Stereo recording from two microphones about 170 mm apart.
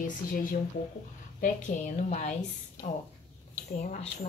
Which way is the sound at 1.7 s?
50° left (ahead or behind).